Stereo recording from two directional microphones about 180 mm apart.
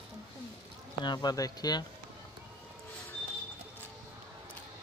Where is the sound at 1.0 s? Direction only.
20° left (ahead or behind).